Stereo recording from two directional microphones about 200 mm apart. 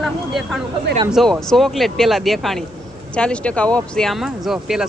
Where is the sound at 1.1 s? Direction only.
Centre (ahead or behind).